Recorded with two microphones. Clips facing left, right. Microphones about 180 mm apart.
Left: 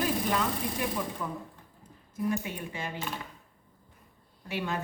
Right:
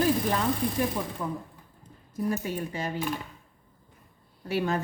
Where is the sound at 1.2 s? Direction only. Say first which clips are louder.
Right 3 dB; 20° right (ahead or behind).